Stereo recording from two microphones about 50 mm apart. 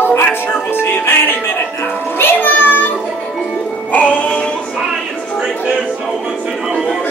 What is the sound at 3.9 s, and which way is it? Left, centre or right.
Music, left.